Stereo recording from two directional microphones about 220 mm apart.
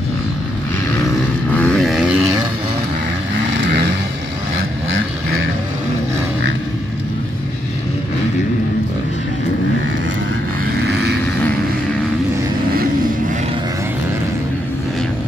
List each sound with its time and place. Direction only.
1.6 s vehicle: 5° left (ahead or behind)
10.9 s vehicle: 50° right (ahead or behind)